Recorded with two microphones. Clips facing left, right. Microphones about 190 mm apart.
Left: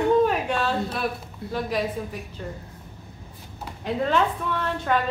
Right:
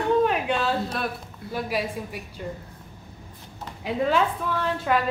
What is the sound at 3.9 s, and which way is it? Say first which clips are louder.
A woman's voice: even; 5° right (ahead or behind).